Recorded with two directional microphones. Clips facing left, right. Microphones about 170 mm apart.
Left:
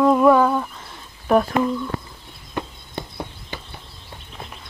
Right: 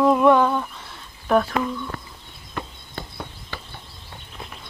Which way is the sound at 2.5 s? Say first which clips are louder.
Left 4 dB; 20° left (ahead or behind).